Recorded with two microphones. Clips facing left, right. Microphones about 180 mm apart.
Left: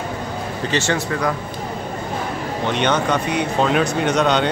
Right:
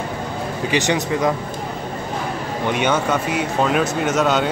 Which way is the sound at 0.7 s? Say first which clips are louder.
Right 1 dB; 15° right (ahead or behind).